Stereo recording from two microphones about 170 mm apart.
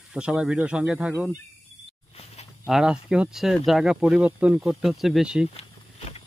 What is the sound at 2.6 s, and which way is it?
Speech, 5° right (ahead or behind).